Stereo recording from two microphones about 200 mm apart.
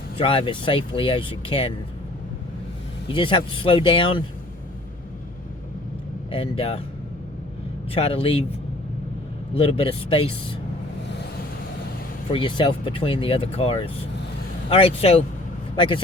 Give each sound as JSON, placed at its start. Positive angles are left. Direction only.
{"t": 0.2, "sound": "speech", "side_deg": 25}
{"t": 3.1, "sound": "speech", "side_deg": 25}
{"t": 6.3, "sound": "speech", "side_deg": 25}
{"t": 7.9, "sound": "speech", "side_deg": 30}
{"t": 9.6, "sound": "speech", "side_deg": 25}
{"t": 12.3, "sound": "speech", "side_deg": 25}